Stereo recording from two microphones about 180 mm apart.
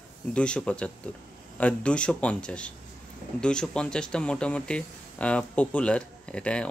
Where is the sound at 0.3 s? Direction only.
5° left (ahead or behind).